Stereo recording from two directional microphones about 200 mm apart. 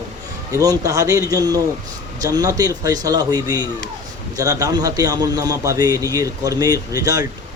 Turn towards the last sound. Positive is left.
turn(degrees=-15)  # may be behind; listen again after turning